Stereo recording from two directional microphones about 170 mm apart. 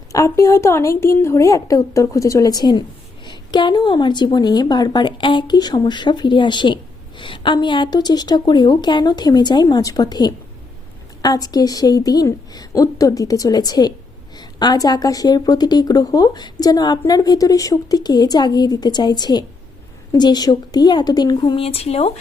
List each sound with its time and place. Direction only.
0.1 s a woman's voice: 20° left (ahead or behind); by 22.1 s 35° left (ahead or behind)